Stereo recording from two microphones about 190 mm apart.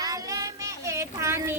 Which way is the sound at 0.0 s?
20° right (ahead or behind).